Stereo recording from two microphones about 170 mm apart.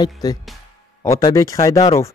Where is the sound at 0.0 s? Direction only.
20° left (ahead or behind).